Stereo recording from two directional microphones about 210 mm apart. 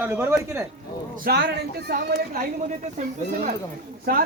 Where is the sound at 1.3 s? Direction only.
50° right (ahead or behind).